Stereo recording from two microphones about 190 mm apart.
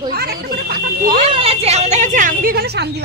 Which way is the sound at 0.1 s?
55° right (ahead or behind).